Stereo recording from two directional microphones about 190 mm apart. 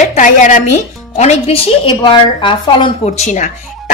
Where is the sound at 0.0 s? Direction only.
40° left (ahead or behind).